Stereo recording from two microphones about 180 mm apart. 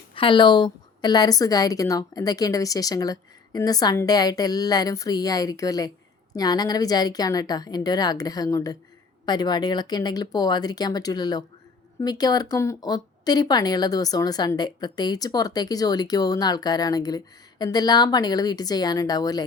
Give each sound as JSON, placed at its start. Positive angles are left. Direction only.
{"t": 0.1, "sound": "speech", "side_deg": 30}